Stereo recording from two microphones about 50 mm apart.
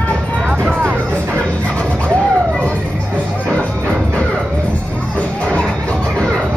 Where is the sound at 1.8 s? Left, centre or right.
Left.